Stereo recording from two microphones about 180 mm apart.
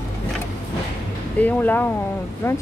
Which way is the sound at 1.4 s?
10° left (ahead or behind).